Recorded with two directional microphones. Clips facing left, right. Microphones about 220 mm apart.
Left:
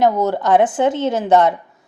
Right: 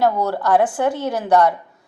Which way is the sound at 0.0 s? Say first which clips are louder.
Left 3 dB; 20° left (ahead or behind).